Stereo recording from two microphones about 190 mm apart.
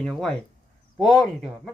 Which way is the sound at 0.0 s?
5° left (ahead or behind).